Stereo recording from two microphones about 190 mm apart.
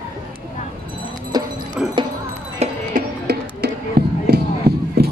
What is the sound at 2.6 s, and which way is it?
Music, 35° right (ahead or behind).